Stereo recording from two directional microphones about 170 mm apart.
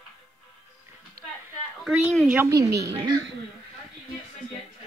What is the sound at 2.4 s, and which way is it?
Speech, 20° right (ahead or behind).